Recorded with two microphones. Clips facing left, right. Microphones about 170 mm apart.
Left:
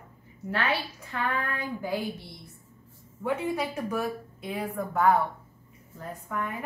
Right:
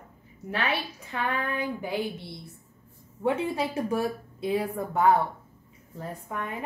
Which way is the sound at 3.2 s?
30° right (ahead or behind).